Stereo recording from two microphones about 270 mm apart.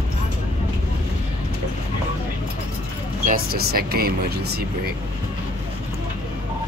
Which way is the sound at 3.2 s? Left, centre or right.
Right.